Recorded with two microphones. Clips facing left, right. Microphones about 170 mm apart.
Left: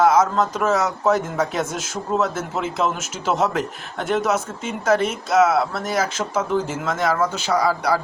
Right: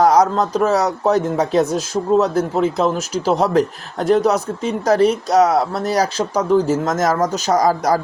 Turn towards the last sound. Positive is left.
turn(degrees=-45)  # may be behind; listen again after turning